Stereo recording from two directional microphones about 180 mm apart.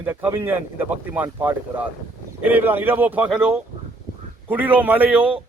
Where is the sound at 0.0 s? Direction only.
10° right (ahead or behind).